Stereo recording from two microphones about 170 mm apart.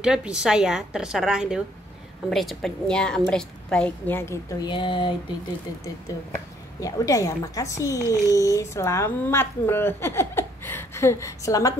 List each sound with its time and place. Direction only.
0.0 s a woman's voice: 5° right (ahead or behind); by 5.1 s 30° left (ahead or behind)
6.8 s speech: 20° left (ahead or behind)